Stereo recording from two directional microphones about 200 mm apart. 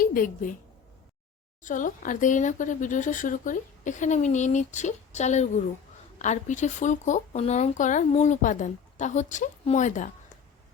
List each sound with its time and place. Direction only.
0.0 s a woman's voice: 45° left (ahead or behind)
1.6 s speech: 40° left (ahead or behind)